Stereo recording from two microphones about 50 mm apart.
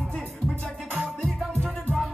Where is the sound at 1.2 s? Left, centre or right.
Centre.